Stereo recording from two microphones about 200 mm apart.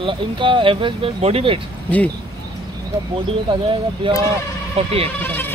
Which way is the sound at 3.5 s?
25° right (ahead or behind).